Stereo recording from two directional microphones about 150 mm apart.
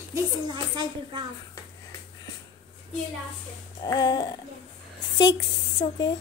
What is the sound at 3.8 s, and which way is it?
Music, 25° left (ahead or behind).